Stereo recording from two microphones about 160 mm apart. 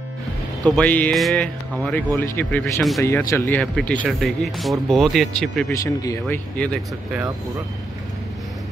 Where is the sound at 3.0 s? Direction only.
15° left (ahead or behind).